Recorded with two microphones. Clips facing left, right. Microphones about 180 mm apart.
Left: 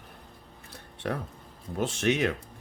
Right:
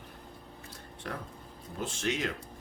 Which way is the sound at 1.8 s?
65° left (ahead or behind).